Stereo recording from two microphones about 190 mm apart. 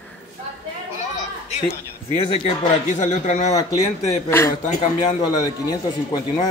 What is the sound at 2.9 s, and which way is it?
Speech, 40° left (ahead or behind).